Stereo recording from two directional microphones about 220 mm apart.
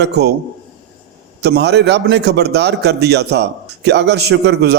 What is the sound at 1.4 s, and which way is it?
A man's voice, 50° right (ahead or behind).